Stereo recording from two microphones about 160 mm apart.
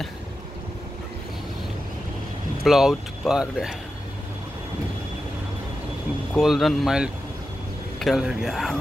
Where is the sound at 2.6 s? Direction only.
Centre (ahead or behind).